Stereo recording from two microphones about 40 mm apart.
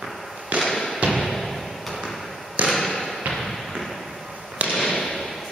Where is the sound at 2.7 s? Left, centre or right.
Centre.